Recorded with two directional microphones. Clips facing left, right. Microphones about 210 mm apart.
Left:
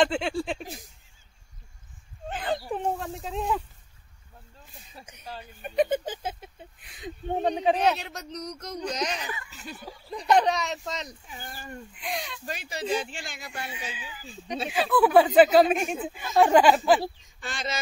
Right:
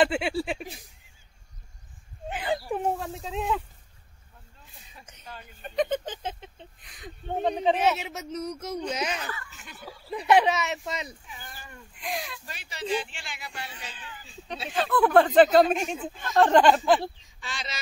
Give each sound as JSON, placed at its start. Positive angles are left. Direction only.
{"t": 0.0, "sound": "a sound", "side_deg": -5}
{"t": 2.2, "sound": "a sound", "side_deg": -10}
{"t": 5.6, "sound": "speech", "side_deg": 10}
{"t": 7.4, "sound": "speech", "side_deg": 0}
{"t": 9.2, "sound": "speech", "side_deg": 15}
{"t": 10.0, "sound": "speech", "side_deg": -5}
{"t": 11.2, "sound": "speech", "side_deg": 35}
{"t": 11.9, "sound": "speech", "side_deg": 0}
{"t": 12.4, "sound": "speech", "side_deg": 40}
{"t": 13.7, "sound": "speech", "side_deg": 10}
{"t": 17.4, "sound": "speech", "side_deg": 50}